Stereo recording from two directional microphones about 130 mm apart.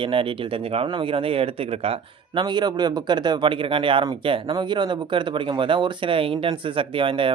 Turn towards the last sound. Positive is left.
turn(degrees=-40)  # may be behind; listen again after turning